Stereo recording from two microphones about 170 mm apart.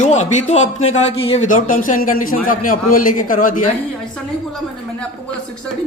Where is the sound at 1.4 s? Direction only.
50° left (ahead or behind).